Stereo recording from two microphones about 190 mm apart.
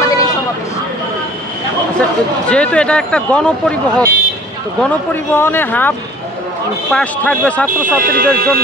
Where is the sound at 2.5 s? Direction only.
5° left (ahead or behind).